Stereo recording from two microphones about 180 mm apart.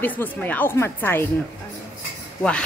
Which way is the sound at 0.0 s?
10° left (ahead or behind).